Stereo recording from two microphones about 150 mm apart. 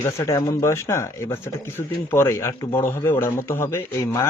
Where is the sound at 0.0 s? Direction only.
20° left (ahead or behind).